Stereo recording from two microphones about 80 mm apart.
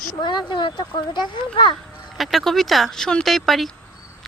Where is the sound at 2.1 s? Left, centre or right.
Centre.